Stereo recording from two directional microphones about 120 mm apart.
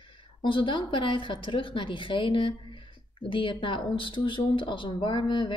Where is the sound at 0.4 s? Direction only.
45° left (ahead or behind).